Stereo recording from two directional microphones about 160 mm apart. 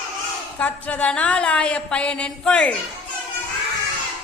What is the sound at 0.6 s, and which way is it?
A woman's voice, 10° left (ahead or behind).